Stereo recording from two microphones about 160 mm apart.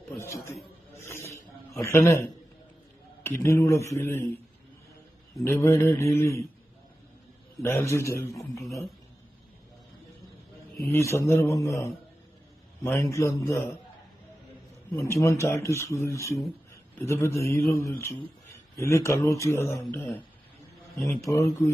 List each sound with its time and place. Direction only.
0.2 s a man's voice: 15° left (ahead or behind)
0.9 s snake: 15° left (ahead or behind)
3.2 s a man's voice: 15° left (ahead or behind)
5.4 s speech: 5° left (ahead or behind)
5.6 s a man's voice: 15° left (ahead or behind)
7.6 s a man's voice: 15° left (ahead or behind)
10.8 s a man's voice: 15° left (ahead or behind)
15.1 s a man's voice: 20° left (ahead or behind)